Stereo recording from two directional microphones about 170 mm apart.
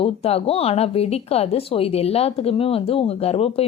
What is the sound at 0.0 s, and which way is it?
Speech, 35° left (ahead or behind).